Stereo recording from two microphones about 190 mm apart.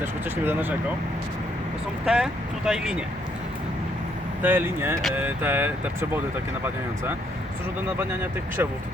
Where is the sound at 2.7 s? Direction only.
5° right (ahead or behind).